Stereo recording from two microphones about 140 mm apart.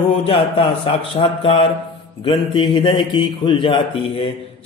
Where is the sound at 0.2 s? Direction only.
45° left (ahead or behind).